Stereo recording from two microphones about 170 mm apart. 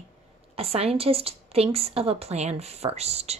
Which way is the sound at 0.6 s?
35° right (ahead or behind).